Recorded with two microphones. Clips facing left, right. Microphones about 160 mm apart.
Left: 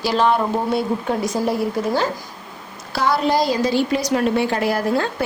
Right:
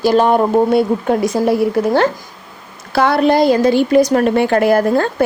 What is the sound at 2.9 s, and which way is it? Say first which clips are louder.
A woman's voice: right 6 dB; 60° right (ahead or behind).